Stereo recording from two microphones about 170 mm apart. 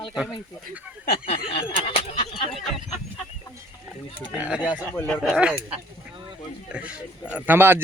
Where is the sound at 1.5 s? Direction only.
35° left (ahead or behind).